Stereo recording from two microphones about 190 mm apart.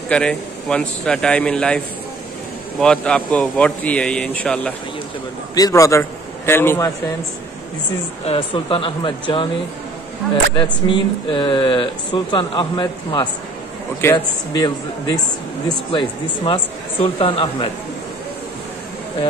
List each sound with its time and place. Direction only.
0.1 s speech: 5° left (ahead or behind)
2.8 s a man's voice: 5° left (ahead or behind)
5.5 s a man's voice: 20° left (ahead or behind)
8.3 s speech: 30° left (ahead or behind)
10.5 s speech: 25° left (ahead or behind)